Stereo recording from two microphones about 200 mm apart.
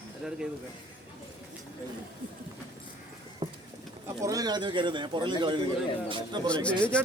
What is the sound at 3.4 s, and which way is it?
Clip-clop, 20° right (ahead or behind).